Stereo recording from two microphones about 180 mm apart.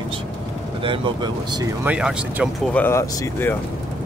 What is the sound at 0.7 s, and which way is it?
Speech, 30° right (ahead or behind).